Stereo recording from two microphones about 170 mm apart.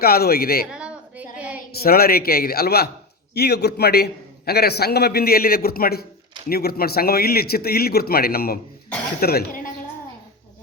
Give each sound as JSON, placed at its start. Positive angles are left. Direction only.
{"t": 0.0, "sound": "speech", "side_deg": 65}
{"t": 0.7, "sound": "a sound", "side_deg": -5}
{"t": 1.8, "sound": "a man's voice", "side_deg": 60}